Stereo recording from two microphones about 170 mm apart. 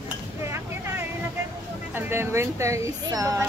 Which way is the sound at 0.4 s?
15° right (ahead or behind).